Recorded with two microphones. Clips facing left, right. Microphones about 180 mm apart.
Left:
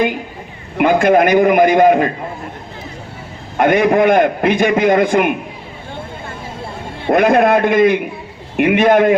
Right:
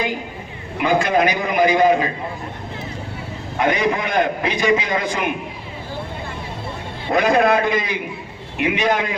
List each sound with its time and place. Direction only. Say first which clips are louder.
0.8 s a man's voice: left 6 dB; 55° left (ahead or behind)
3.6 s a man's voice: left 8 dB; 55° left (ahead or behind)
7.1 s a man's voice: left 5 dB; 55° left (ahead or behind)